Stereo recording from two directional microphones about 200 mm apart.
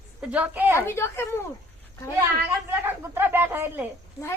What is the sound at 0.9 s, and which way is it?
Speech, 10° left (ahead or behind).